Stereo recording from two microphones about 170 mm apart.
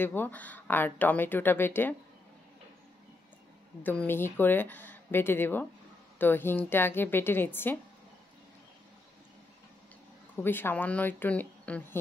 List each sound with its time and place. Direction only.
0.0 s speech: 10° left (ahead or behind)
3.8 s speech: 10° left (ahead or behind)
10.3 s speech: 10° left (ahead or behind)